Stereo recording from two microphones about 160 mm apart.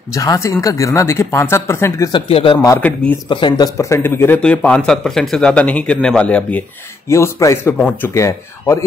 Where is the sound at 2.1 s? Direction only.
35° left (ahead or behind).